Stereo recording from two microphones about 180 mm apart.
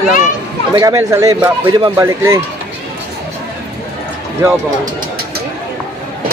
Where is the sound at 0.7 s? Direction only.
15° right (ahead or behind).